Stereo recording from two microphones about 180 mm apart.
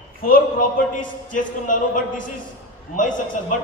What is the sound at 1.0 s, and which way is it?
A man's voice, 45° left (ahead or behind).